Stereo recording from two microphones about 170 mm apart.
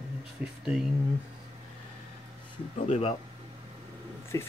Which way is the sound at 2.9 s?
35° left (ahead or behind).